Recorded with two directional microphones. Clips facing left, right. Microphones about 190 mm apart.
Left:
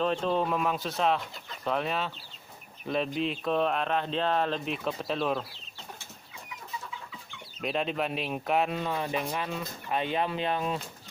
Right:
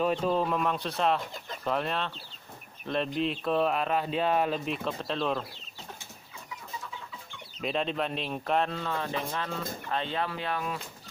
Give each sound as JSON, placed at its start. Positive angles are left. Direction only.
{"t": 0.0, "sound": "speech", "side_deg": -10}
{"t": 4.6, "sound": "speech", "side_deg": 0}
{"t": 7.6, "sound": "speech", "side_deg": 5}